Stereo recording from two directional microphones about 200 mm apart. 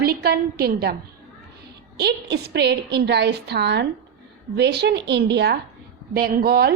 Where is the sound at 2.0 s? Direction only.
55° right (ahead or behind).